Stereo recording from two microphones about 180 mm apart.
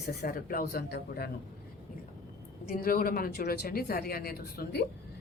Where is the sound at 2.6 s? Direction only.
55° left (ahead or behind).